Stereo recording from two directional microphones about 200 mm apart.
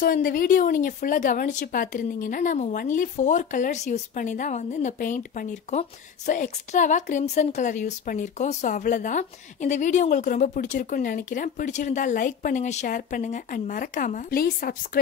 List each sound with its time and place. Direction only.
0.0 s speech: 45° left (ahead or behind)